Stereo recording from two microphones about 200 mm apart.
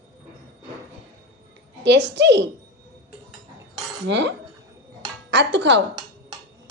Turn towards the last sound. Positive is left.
turn(degrees=-60)  # may be behind; listen again after turning